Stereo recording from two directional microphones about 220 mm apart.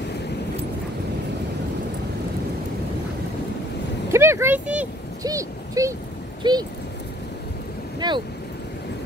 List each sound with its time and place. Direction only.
4.1 s a sound: 10° right (ahead or behind)
6.4 s speech: 20° right (ahead or behind)
8.0 s speech: 20° right (ahead or behind)